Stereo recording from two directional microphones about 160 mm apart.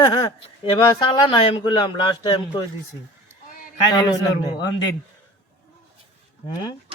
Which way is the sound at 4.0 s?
25° left (ahead or behind).